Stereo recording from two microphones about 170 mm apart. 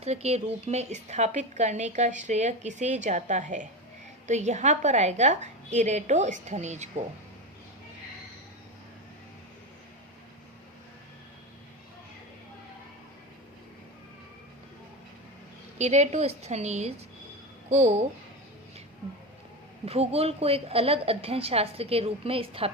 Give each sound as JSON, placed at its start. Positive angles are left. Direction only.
{"t": 0.0, "sound": "a woman's voice", "side_deg": -40}
{"t": 15.8, "sound": "a woman's voice", "side_deg": -40}
{"t": 19.8, "sound": "a woman's voice", "side_deg": -35}